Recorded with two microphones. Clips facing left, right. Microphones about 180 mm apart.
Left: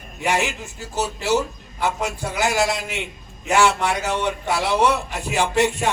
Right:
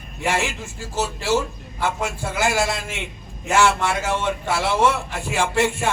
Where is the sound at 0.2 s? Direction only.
15° left (ahead or behind).